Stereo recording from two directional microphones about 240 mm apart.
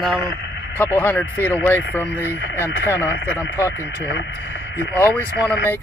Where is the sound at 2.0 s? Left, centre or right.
Left.